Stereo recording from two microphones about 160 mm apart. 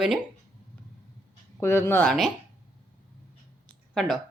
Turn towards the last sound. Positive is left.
turn(degrees=5)  # may be behind; listen again after turning